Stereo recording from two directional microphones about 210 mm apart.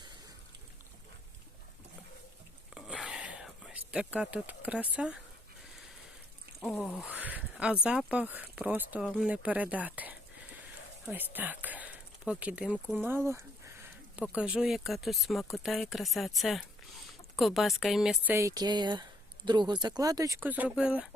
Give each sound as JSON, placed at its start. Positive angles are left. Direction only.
{"t": 2.7, "sound": "whispering", "side_deg": -5}
{"t": 6.6, "sound": "speech", "side_deg": 5}
{"t": 7.1, "sound": "speech", "side_deg": -5}
{"t": 18.3, "sound": "speech", "side_deg": -15}